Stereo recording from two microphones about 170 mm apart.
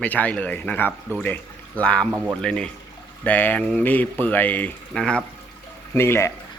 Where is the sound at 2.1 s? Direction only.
10° right (ahead or behind).